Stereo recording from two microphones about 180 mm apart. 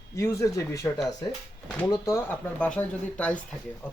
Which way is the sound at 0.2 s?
15° left (ahead or behind).